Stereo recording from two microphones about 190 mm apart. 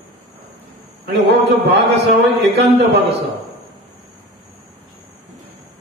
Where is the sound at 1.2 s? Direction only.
60° right (ahead or behind).